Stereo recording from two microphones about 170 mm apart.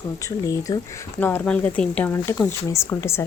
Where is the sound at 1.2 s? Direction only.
10° left (ahead or behind).